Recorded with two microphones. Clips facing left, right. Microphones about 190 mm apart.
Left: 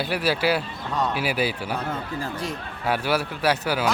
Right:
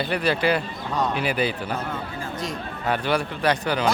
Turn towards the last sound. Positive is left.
turn(degrees=5)  # may be behind; listen again after turning